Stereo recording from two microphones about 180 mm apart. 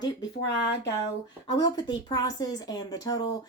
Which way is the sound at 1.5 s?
25° left (ahead or behind).